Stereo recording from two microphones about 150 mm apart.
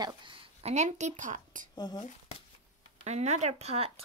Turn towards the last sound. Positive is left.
turn(degrees=-45)  # may be behind; listen again after turning